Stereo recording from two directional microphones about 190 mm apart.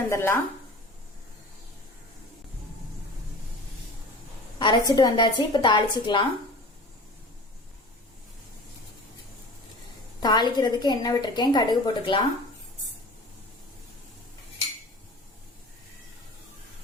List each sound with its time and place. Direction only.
0.1 s speech: 15° left (ahead or behind)
4.6 s a woman's voice: 20° left (ahead or behind)
10.2 s a woman's voice: 20° left (ahead or behind)